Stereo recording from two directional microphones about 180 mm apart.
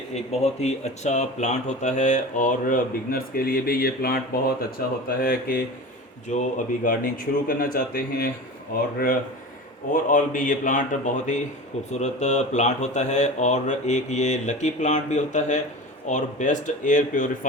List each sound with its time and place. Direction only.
0.1 s speech: 35° left (ahead or behind); by 5.6 s 55° left (ahead or behind)
6.2 s speech: 45° left (ahead or behind)
9.9 s speech: 50° left (ahead or behind)